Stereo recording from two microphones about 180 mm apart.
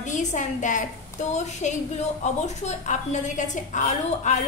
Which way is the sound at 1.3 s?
40° left (ahead or behind).